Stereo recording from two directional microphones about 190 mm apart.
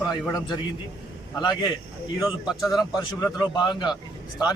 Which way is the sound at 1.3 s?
20° left (ahead or behind).